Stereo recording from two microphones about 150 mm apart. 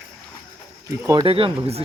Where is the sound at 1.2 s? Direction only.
40° right (ahead or behind).